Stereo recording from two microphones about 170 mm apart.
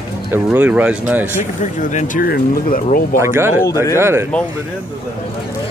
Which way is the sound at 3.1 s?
15° right (ahead or behind).